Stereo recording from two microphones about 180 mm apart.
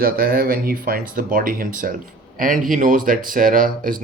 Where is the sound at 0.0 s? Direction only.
55° right (ahead or behind).